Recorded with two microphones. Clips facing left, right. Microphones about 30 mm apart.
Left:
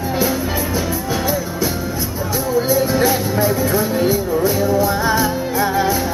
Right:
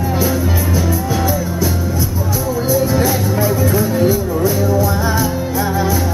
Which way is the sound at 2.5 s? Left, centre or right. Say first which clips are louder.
Even; centre.